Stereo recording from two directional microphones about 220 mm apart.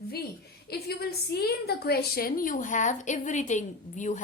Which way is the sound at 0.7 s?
45° left (ahead or behind).